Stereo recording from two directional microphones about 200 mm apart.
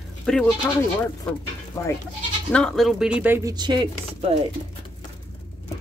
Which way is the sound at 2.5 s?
5° left (ahead or behind).